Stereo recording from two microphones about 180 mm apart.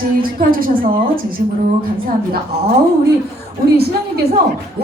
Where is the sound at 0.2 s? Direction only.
55° right (ahead or behind).